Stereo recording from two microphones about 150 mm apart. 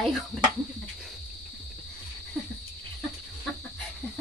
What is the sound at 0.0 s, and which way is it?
Speech, centre (ahead or behind).